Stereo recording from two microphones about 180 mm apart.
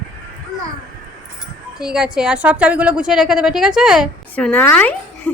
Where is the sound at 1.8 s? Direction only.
5° right (ahead or behind).